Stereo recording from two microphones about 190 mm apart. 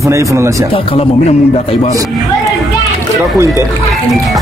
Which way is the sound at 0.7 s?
30° left (ahead or behind).